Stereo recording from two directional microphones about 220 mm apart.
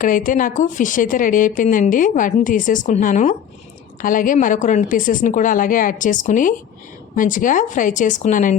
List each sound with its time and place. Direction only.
0.0 s speech: 35° left (ahead or behind)